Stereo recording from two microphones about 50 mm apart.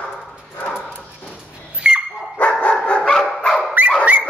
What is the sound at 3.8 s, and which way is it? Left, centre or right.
Dog, right.